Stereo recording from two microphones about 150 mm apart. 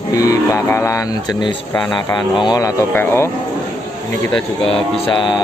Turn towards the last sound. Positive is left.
turn(degrees=35)  # may be behind; listen again after turning